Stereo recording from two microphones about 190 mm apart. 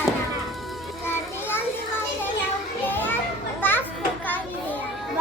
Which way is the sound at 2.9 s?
10° left (ahead or behind).